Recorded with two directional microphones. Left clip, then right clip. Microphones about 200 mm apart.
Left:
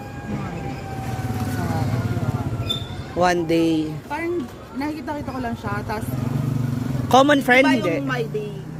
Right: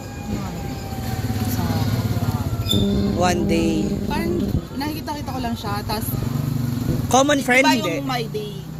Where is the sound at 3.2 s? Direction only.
20° left (ahead or behind).